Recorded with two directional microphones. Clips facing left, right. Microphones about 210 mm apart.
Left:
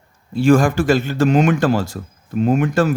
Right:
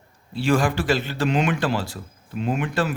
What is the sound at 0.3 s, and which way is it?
A man's voice, 45° left (ahead or behind).